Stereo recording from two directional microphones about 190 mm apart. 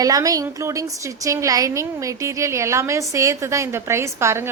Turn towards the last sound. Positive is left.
turn(degrees=-15)  # may be behind; listen again after turning